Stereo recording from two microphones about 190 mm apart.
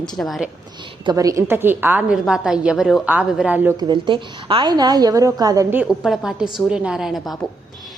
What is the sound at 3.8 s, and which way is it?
A woman's voice, 25° right (ahead or behind).